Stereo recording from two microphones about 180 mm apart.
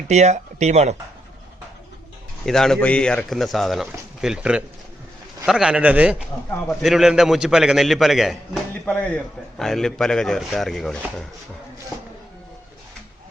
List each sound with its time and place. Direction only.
0.1 s speech: 40° right (ahead or behind)
2.5 s a man's voice: centre (ahead or behind)